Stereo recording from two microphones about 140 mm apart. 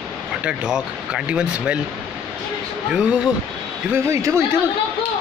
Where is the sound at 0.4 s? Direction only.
5° right (ahead or behind).